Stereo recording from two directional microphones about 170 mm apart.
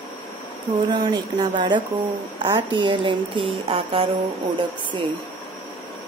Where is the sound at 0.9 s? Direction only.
25° right (ahead or behind).